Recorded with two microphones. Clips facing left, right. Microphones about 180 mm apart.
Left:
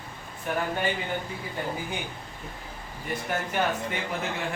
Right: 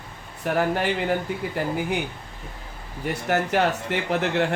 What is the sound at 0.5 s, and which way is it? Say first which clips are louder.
A man's voice: right 6 dB; 75° right (ahead or behind).